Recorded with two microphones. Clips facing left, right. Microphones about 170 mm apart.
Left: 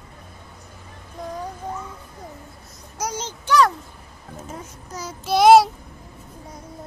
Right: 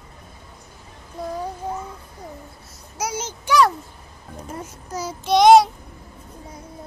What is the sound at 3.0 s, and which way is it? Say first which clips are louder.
Speech: right 1 dB; 10° right (ahead or behind).